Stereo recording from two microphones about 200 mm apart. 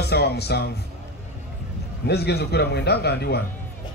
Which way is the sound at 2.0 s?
55° left (ahead or behind).